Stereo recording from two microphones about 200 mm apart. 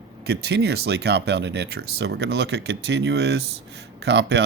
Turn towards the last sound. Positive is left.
turn(degrees=-60)  # may be behind; listen again after turning